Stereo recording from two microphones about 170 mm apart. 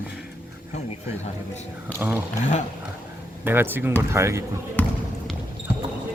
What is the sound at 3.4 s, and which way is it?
Speech, 10° right (ahead or behind).